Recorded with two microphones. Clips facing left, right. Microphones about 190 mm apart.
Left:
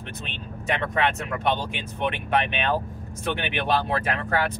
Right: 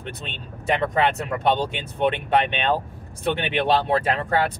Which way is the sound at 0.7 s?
35° right (ahead or behind).